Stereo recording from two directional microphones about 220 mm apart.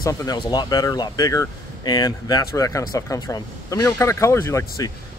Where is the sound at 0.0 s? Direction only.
15° left (ahead or behind).